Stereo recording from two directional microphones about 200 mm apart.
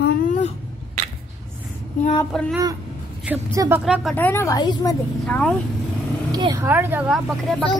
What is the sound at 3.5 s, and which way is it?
Speech, 15° right (ahead or behind).